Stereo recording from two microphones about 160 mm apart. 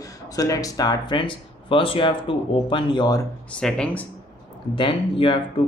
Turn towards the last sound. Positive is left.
turn(degrees=30)  # may be behind; listen again after turning